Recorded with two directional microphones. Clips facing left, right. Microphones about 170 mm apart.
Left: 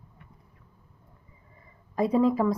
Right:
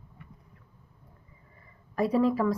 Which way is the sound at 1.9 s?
20° left (ahead or behind).